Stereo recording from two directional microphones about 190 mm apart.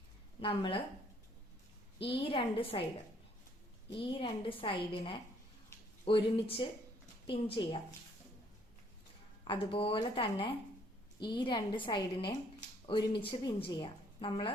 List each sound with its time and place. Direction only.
0.3 s speech: 25° left (ahead or behind)
2.0 s a woman's voice: 30° left (ahead or behind)
3.9 s a woman's voice: 25° left (ahead or behind)
9.4 s a woman's voice: 25° left (ahead or behind)